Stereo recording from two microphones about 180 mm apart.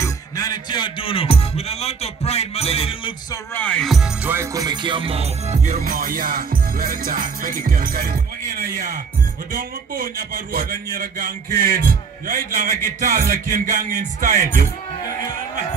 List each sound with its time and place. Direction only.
0.0 s music: 20° left (ahead or behind)
3.5 s music: 5° left (ahead or behind); by 5.8 s 40° right (ahead or behind)
5.9 s a man's voice: 50° right (ahead or behind)